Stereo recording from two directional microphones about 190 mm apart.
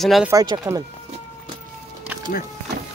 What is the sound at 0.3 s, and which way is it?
Speech, 20° right (ahead or behind).